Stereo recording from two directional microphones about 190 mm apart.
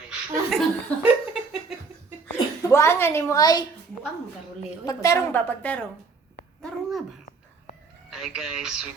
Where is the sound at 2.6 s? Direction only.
15° left (ahead or behind).